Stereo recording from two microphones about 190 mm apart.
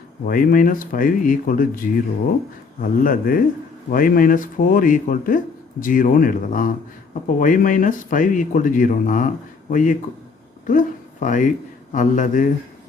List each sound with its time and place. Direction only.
0.3 s speech: 45° left (ahead or behind)